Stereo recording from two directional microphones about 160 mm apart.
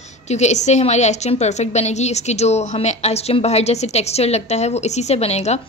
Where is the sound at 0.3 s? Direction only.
45° left (ahead or behind).